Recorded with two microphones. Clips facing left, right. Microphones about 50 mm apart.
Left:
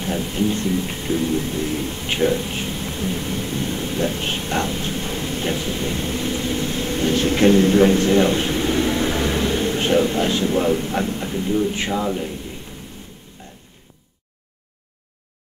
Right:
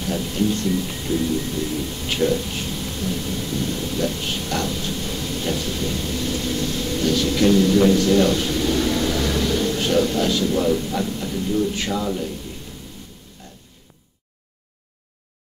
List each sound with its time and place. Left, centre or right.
0.0 s speech: left